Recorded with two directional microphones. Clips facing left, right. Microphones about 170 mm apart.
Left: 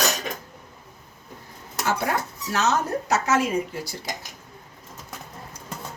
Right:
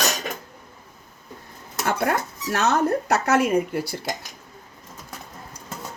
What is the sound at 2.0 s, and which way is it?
Speech, 55° right (ahead or behind).